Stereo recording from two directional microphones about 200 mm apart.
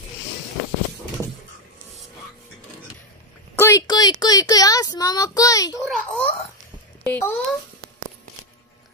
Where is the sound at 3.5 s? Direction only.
15° left (ahead or behind).